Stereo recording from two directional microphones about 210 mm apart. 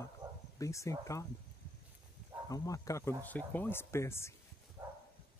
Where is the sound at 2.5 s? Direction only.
15° left (ahead or behind).